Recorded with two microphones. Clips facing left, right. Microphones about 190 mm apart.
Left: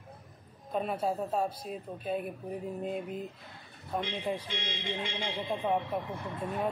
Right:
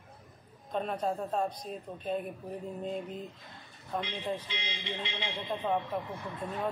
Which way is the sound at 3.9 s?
5° left (ahead or behind).